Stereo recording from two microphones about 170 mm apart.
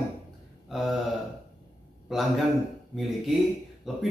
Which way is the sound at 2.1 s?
Centre (ahead or behind).